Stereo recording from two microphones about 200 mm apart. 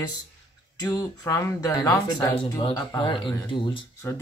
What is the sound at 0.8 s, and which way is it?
Speech, 20° left (ahead or behind).